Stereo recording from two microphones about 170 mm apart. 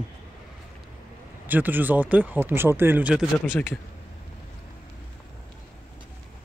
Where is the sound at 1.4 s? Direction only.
10° right (ahead or behind).